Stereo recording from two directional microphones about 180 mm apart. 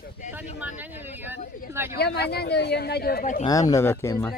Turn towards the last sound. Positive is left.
turn(degrees=15)  # may be behind; listen again after turning